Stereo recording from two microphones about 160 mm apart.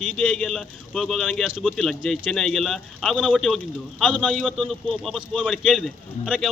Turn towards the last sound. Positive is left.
turn(degrees=0)  # may be behind; listen again after turning